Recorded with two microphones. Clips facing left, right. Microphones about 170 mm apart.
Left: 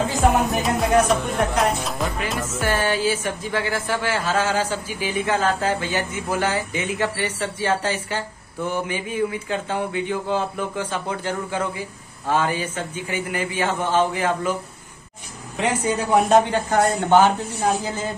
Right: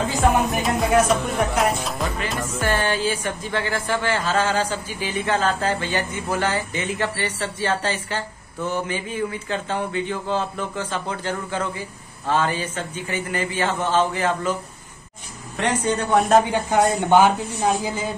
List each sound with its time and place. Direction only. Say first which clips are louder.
0.5 s music: even; centre (ahead or behind)
15.5 s speech: even; 5° left (ahead or behind)
16.4 s a woman's voice: even; 10° right (ahead or behind)